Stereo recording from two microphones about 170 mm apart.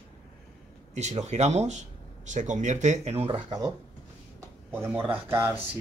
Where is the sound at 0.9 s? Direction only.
40° right (ahead or behind); by 3.7 s 25° right (ahead or behind).